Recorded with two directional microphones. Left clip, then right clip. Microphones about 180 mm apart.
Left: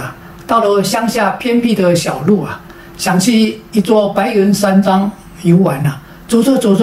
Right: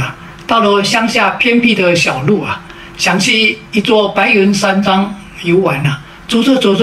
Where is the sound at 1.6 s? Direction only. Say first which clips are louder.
Right 2 dB; 20° left (ahead or behind).